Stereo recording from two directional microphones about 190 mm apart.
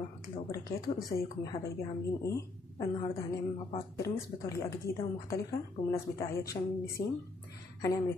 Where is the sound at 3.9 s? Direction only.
15° left (ahead or behind).